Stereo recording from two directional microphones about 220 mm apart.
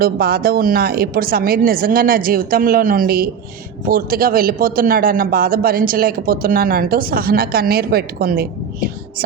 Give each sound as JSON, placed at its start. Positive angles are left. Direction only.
{"t": 0.0, "sound": "a man's voice", "side_deg": -45}